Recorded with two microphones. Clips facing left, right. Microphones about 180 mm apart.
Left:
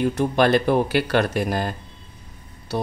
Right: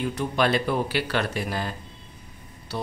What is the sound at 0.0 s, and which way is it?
Speech, 45° left (ahead or behind).